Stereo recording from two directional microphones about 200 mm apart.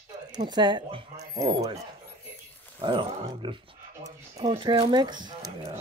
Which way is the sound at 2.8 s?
25° right (ahead or behind).